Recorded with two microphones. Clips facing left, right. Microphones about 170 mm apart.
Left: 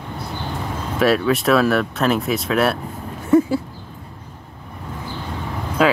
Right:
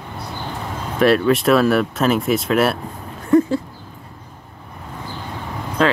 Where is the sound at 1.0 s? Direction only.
Centre (ahead or behind).